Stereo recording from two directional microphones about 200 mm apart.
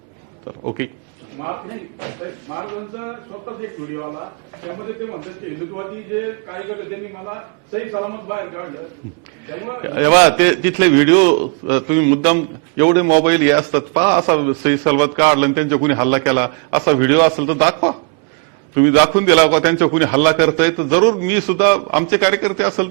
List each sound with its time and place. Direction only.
7.9 s a man's voice: 20° right (ahead or behind)
9.8 s a man's voice: 15° right (ahead or behind)